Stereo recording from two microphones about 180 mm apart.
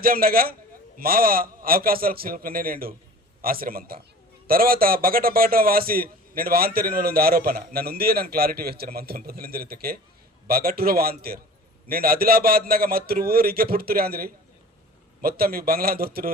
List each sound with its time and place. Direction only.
0.0 s a man's voice: 55° right (ahead or behind)